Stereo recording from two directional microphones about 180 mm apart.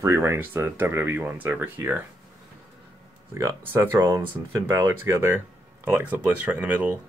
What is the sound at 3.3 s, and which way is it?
Speech, 15° right (ahead or behind).